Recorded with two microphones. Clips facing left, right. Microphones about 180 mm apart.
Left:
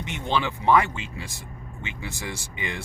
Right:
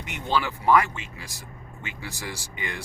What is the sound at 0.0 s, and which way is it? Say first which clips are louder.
Speech: even; 20° left (ahead or behind).